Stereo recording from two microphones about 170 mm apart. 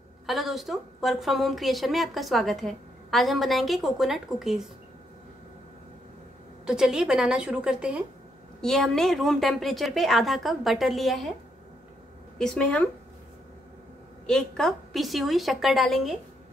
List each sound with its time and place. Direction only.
0.3 s a woman's voice: centre (ahead or behind)
6.6 s a woman's voice: 5° right (ahead or behind)
12.4 s a woman's voice: 5° left (ahead or behind)
14.2 s a woman's voice: 5° left (ahead or behind)